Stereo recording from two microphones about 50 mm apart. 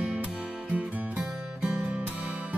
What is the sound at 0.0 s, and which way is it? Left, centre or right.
Music, right.